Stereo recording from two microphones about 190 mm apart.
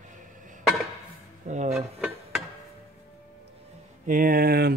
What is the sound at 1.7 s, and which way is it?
Dishes, centre (ahead or behind).